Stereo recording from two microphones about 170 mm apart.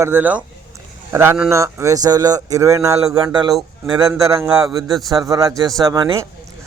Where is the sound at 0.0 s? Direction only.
10° right (ahead or behind).